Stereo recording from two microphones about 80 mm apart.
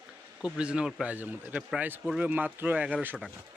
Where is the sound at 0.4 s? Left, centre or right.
Centre.